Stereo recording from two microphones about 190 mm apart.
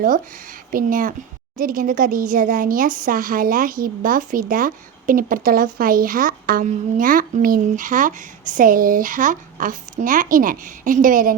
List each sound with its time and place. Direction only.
0.7 s speech: 45° right (ahead or behind)